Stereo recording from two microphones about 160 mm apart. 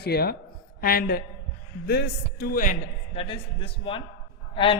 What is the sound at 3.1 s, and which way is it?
A man's voice, 35° left (ahead or behind).